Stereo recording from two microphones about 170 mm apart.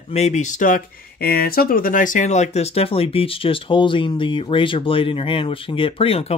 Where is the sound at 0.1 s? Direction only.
40° left (ahead or behind).